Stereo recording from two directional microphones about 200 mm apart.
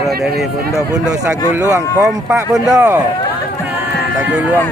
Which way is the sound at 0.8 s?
20° right (ahead or behind).